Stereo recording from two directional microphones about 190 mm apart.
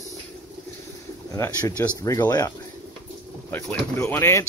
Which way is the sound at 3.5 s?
10° left (ahead or behind).